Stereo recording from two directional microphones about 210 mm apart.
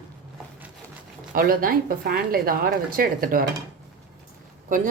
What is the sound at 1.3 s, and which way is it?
A woman's voice, 40° right (ahead or behind).